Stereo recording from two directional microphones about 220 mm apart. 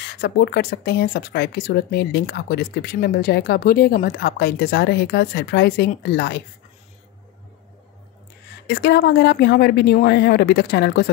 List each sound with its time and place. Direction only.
0.0 s speech: 50° left (ahead or behind)
8.6 s speech: 50° left (ahead or behind)